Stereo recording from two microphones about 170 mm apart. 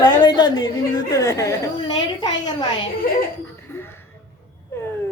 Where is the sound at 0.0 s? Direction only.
25° left (ahead or behind).